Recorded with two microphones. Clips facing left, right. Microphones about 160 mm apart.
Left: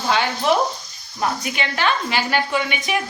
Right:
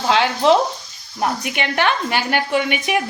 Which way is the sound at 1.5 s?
60° right (ahead or behind).